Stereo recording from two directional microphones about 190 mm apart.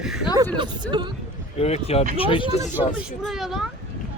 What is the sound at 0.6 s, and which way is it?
Speech, 25° right (ahead or behind).